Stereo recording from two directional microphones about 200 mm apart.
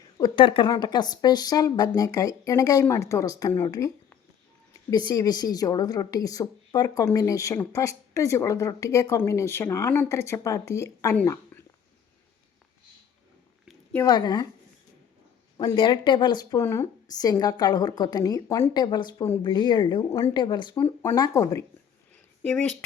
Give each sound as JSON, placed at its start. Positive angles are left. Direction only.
{"t": 0.2, "sound": "a woman's voice", "side_deg": 25}
{"t": 14.0, "sound": "speech", "side_deg": 20}
{"t": 15.5, "sound": "speech", "side_deg": 25}